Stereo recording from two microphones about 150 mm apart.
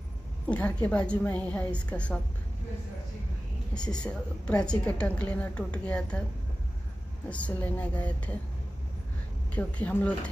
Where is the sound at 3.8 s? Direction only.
5° left (ahead or behind).